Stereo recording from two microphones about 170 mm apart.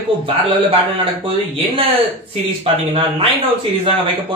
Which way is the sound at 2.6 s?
35° right (ahead or behind).